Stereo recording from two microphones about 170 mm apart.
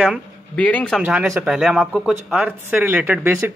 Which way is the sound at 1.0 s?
5° right (ahead or behind).